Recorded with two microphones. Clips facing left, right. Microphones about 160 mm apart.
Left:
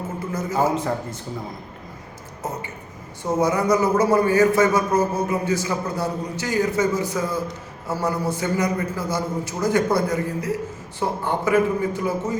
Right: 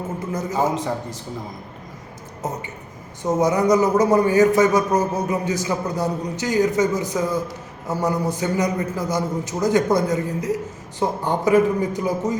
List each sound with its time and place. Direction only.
0.5 s a man's voice: centre (ahead or behind)
3.2 s a man's voice: 20° right (ahead or behind)